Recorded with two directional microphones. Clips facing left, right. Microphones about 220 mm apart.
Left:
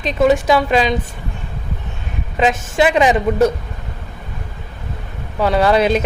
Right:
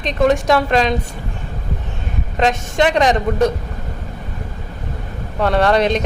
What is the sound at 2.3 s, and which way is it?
Speech, 5° left (ahead or behind).